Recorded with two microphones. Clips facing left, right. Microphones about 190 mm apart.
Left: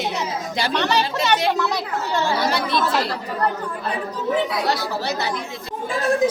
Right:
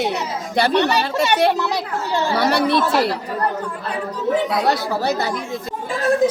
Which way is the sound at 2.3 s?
65° right (ahead or behind).